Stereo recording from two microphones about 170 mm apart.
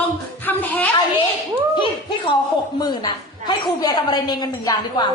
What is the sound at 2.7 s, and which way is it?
A woman's voice, 25° left (ahead or behind).